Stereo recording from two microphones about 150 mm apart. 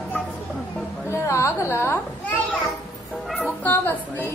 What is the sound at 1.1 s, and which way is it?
Carnatic music, 20° left (ahead or behind).